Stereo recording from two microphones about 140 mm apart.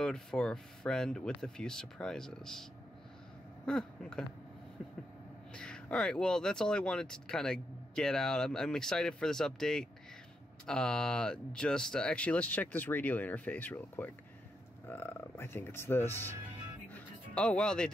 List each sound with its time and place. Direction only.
0.0 s speech: 5° left (ahead or behind)
3.6 s speech: 5° left (ahead or behind)
5.5 s speech: 5° left (ahead or behind)
16.9 s music: 10° left (ahead or behind)